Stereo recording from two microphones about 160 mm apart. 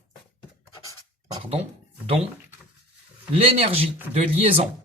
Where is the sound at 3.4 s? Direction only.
35° right (ahead or behind).